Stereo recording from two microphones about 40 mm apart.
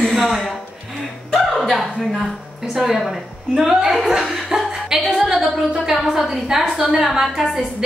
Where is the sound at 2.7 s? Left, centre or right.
Centre.